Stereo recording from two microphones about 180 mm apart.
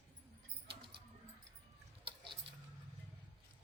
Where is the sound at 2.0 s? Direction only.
25° right (ahead or behind).